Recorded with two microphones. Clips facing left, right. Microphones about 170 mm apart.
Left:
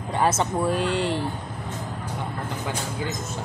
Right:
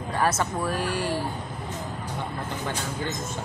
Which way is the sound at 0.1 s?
25° left (ahead or behind).